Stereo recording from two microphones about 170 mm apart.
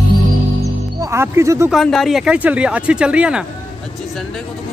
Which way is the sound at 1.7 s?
Centre (ahead or behind).